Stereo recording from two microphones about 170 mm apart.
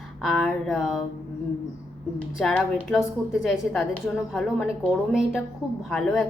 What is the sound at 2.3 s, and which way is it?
A woman's voice, centre (ahead or behind).